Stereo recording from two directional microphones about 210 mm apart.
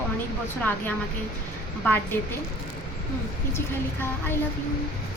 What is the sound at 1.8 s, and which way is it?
Speech, 10° left (ahead or behind).